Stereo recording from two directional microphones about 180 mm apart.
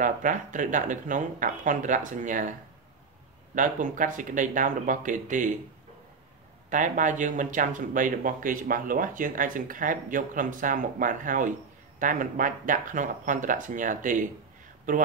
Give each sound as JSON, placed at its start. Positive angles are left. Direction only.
{"t": 0.0, "sound": "speech", "side_deg": -45}
{"t": 3.5, "sound": "speech", "side_deg": -45}
{"t": 6.7, "sound": "speech", "side_deg": -45}